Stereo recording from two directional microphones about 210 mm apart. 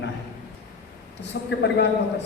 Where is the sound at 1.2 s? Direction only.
55° left (ahead or behind).